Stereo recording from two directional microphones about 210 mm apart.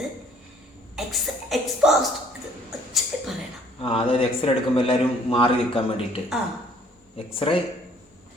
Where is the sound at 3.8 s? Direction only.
25° left (ahead or behind).